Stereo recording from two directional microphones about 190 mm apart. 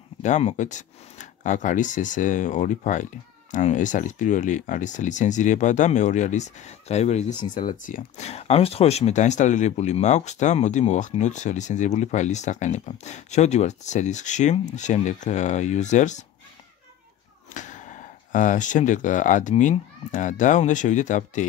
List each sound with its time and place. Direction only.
0.2 s speech: 40° left (ahead or behind)
17.6 s speech: 40° left (ahead or behind)